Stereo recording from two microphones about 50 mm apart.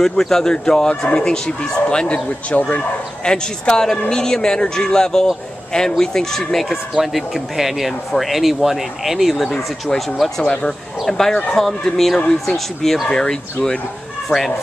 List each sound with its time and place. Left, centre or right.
0.0 s speech: centre; by 2.8 s left
3.3 s speech: centre
10.4 s speech: left
11.1 s speech: centre
13.1 s speech: centre
14.3 s speech: centre